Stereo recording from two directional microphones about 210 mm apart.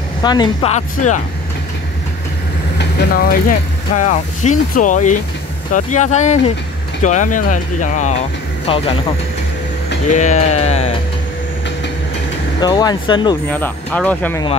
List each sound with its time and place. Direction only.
0.2 s speech: 20° left (ahead or behind)
0.7 s speech: 35° left (ahead or behind)
2.8 s speech: 45° left (ahead or behind)
8.6 s speech: 25° left (ahead or behind)
10.1 s speech: 35° left (ahead or behind)
12.5 s speech: 20° left (ahead or behind)
13.5 s speech: 10° left (ahead or behind)